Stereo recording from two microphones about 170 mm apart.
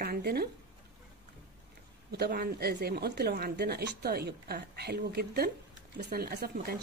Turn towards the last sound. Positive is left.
turn(degrees=-65)  # may be behind; listen again after turning